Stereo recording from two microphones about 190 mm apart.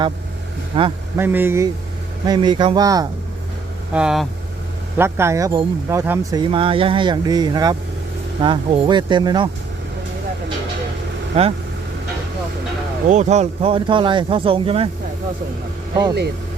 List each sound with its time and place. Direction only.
0.7 s speech: 25° right (ahead or behind)
1.1 s a man's voice: 10° right (ahead or behind)
3.9 s speech: 5° right (ahead or behind)
4.9 s speech: 15° right (ahead or behind)
11.3 s speech: 30° right (ahead or behind)
13.1 s speech: 35° right (ahead or behind)